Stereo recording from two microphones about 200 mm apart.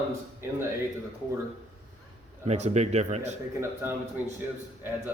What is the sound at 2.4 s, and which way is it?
Speech, 35° right (ahead or behind).